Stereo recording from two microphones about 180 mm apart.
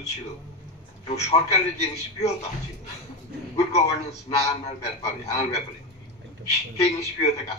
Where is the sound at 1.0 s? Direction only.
35° left (ahead or behind).